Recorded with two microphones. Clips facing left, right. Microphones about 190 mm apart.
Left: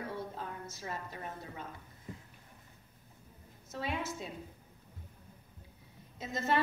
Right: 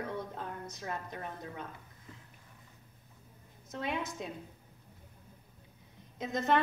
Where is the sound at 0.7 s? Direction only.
5° left (ahead or behind).